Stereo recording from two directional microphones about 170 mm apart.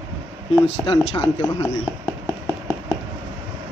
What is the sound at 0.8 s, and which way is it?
Speech, 30° left (ahead or behind).